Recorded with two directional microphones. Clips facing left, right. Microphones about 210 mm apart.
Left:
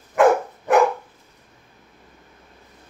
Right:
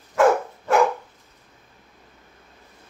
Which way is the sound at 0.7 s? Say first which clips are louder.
Left 2 dB; 15° left (ahead or behind).